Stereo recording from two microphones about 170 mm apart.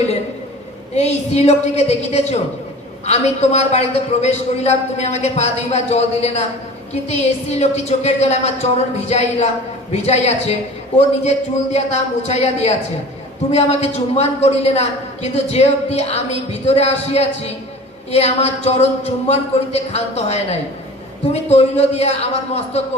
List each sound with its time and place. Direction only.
0.9 s a woman's voice: 40° left (ahead or behind)